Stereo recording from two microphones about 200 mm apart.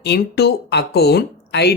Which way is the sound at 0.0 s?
55° left (ahead or behind).